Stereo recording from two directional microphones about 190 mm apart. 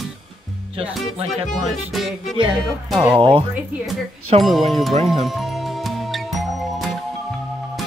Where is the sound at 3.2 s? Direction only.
30° right (ahead or behind).